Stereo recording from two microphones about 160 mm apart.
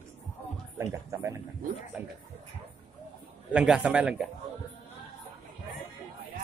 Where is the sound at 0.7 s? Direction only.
20° right (ahead or behind).